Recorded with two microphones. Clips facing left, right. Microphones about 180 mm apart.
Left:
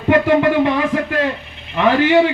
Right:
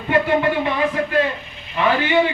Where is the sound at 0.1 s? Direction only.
90° left.